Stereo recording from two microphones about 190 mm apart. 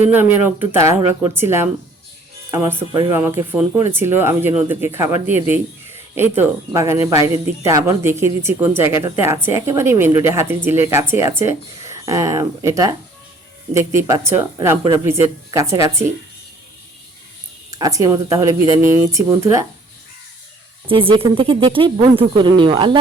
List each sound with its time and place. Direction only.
0.1 s speech: 10° right (ahead or behind)
17.7 s speech: 20° right (ahead or behind)
20.8 s speech: 25° right (ahead or behind)